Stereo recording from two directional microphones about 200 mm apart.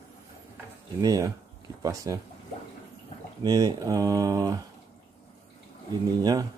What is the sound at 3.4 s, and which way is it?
Speech, 20° right (ahead or behind).